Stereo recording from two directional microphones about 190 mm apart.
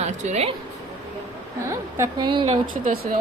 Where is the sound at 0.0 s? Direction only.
35° right (ahead or behind).